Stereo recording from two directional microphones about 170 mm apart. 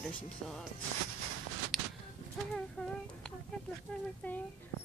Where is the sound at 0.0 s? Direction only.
Centre (ahead or behind).